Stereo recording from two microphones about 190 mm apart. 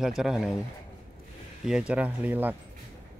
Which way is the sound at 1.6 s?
5° right (ahead or behind).